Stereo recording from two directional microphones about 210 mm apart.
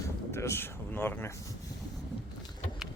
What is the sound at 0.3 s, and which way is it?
Speech, 10° left (ahead or behind).